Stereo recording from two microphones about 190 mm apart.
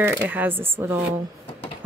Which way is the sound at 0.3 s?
10° right (ahead or behind).